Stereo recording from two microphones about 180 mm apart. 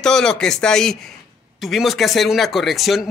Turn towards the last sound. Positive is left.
turn(degrees=0)  # may be behind; listen again after turning